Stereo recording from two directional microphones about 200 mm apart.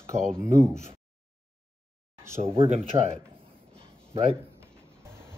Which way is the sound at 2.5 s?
30° right (ahead or behind).